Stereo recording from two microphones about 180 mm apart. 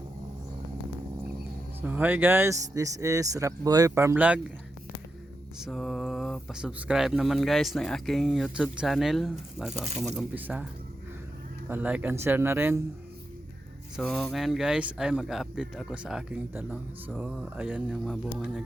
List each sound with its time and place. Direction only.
1.8 s speech: 10° right (ahead or behind)
5.5 s speech: centre (ahead or behind)
11.7 s speech: 10° right (ahead or behind)
13.9 s speech: centre (ahead or behind)